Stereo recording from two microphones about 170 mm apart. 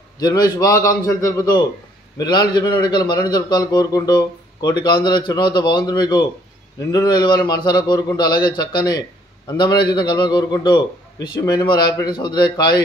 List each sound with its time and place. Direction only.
0.2 s a man's voice: 20° left (ahead or behind)